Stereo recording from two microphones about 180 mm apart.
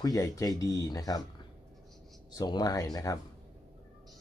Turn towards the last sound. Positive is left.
turn(degrees=20)  # may be behind; listen again after turning